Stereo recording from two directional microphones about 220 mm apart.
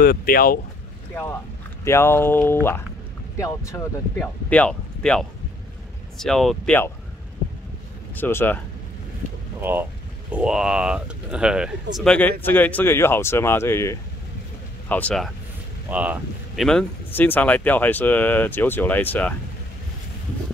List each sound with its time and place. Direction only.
0.0 s speech: 40° left (ahead or behind)
1.1 s speech: 10° left (ahead or behind)
8.1 s speech: 10° left (ahead or behind)
9.6 s speech: 10° right (ahead or behind); by 19.3 s 10° left (ahead or behind)